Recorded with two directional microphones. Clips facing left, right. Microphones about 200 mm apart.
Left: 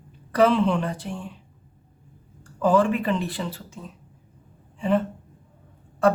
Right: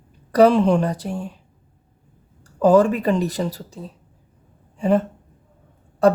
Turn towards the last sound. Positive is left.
turn(degrees=-35)  # may be behind; listen again after turning